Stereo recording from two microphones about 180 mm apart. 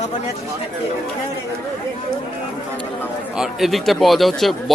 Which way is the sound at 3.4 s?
Centre (ahead or behind).